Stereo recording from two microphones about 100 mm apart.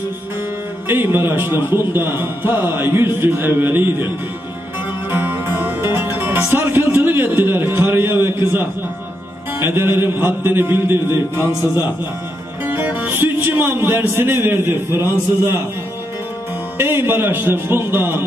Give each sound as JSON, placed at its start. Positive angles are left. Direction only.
{"t": 0.8, "sound": "a man's voice", "side_deg": -20}
{"t": 5.1, "sound": "music", "side_deg": -20}
{"t": 9.6, "sound": "a man's voice", "side_deg": -20}
{"t": 12.6, "sound": "speech", "side_deg": -20}
{"t": 16.7, "sound": "a man's voice", "side_deg": -25}